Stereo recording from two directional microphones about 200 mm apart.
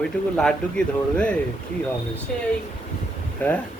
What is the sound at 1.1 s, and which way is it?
Speech, 5° left (ahead or behind).